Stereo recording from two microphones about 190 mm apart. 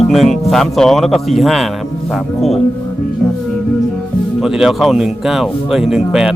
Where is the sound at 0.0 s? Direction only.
Centre (ahead or behind).